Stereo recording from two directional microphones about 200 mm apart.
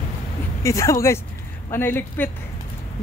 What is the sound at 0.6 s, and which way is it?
Speech, 15° left (ahead or behind).